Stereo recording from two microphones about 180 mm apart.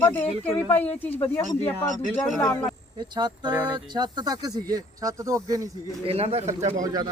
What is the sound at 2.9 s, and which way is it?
Speech, 25° right (ahead or behind).